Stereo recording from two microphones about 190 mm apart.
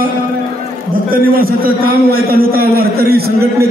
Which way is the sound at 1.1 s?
50° right (ahead or behind).